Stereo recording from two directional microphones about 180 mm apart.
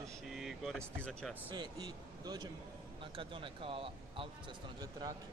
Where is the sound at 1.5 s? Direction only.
25° right (ahead or behind).